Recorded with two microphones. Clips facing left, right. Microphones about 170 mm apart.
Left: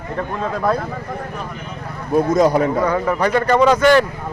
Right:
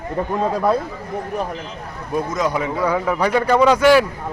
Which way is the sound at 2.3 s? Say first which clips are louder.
Left 8 dB; 35° left (ahead or behind).